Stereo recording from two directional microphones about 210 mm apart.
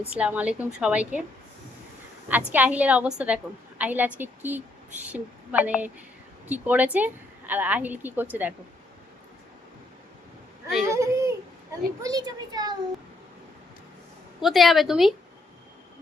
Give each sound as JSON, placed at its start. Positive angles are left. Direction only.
{"t": 0.1, "sound": "a woman's voice", "side_deg": -5}
{"t": 2.5, "sound": "a woman's voice", "side_deg": -5}
{"t": 10.8, "sound": "a woman's voice", "side_deg": -15}
{"t": 14.4, "sound": "a woman's voice", "side_deg": 0}